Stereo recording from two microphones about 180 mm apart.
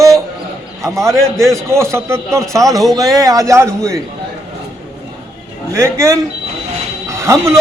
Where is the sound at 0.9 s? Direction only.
15° right (ahead or behind).